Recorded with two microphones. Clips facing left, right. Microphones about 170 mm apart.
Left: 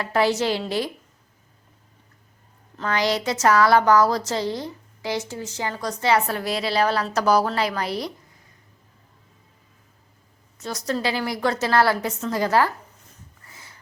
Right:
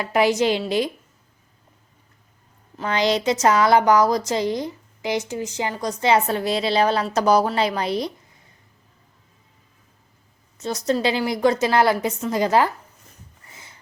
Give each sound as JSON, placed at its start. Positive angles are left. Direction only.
{"t": 0.0, "sound": "a woman's voice", "side_deg": -15}
{"t": 2.7, "sound": "a woman's voice", "side_deg": -20}
{"t": 10.6, "sound": "a woman's voice", "side_deg": -20}
{"t": 13.5, "sound": "sniff", "side_deg": -20}